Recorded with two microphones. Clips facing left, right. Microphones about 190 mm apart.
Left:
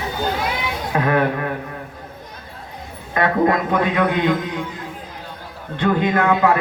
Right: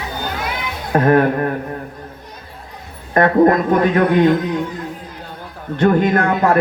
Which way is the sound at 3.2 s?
45° right (ahead or behind).